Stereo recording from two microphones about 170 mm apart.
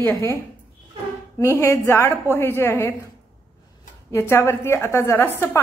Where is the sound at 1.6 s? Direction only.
15° left (ahead or behind).